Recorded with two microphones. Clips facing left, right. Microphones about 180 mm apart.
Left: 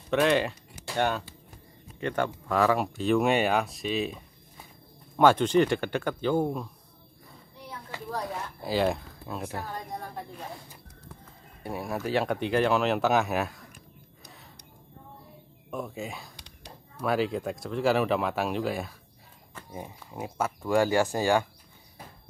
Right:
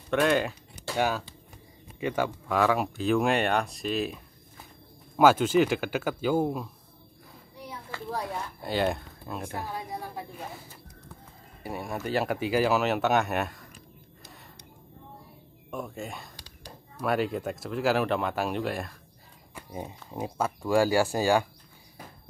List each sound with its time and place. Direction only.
0.1 s speech: centre (ahead or behind)
7.9 s speech: 15° left (ahead or behind)
8.3 s a woman's voice: centre (ahead or behind)
15.7 s speech: centre (ahead or behind)
19.5 s speech: 20° right (ahead or behind)
20.7 s speech: 20° left (ahead or behind)